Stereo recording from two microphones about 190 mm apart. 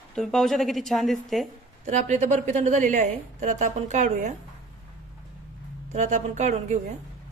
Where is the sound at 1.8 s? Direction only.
40° right (ahead or behind).